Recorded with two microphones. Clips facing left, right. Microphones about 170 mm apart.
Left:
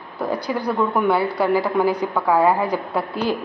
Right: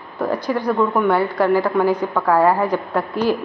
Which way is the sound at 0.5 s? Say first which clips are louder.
Right 3 dB; 5° left (ahead or behind).